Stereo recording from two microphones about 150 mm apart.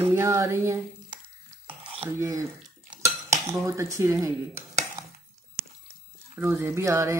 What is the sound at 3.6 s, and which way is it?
Speech, 20° right (ahead or behind).